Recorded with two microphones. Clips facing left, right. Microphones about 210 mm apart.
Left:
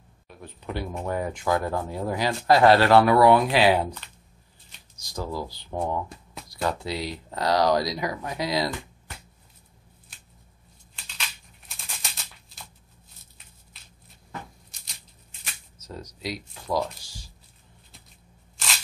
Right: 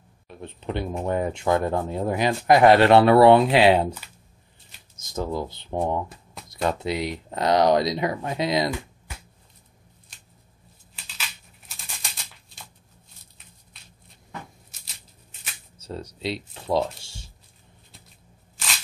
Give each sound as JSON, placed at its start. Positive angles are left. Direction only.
{"t": 0.4, "sound": "speech", "side_deg": -25}
{"t": 4.9, "sound": "speech", "side_deg": -20}
{"t": 12.0, "sound": "a sound", "side_deg": 0}
{"t": 13.7, "sound": "a sound", "side_deg": 0}
{"t": 14.7, "sound": "music", "side_deg": -5}
{"t": 15.8, "sound": "speech", "side_deg": -30}